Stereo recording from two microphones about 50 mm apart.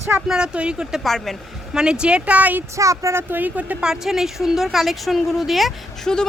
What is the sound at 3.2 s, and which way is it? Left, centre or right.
Speech, right.